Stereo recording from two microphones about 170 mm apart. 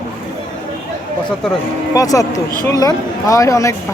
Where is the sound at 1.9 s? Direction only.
20° left (ahead or behind).